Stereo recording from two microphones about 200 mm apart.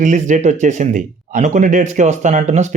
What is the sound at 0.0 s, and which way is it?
Speech, 40° right (ahead or behind).